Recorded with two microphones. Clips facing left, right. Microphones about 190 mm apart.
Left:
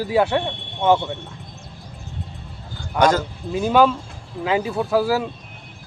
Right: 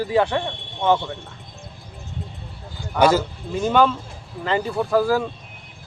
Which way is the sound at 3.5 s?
10° left (ahead or behind).